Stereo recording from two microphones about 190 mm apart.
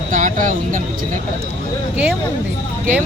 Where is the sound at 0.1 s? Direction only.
45° right (ahead or behind).